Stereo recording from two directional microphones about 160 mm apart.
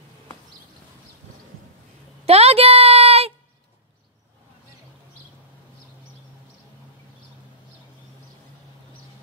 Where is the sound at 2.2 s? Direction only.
40° right (ahead or behind).